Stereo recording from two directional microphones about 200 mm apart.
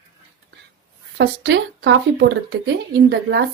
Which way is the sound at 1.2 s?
60° right (ahead or behind).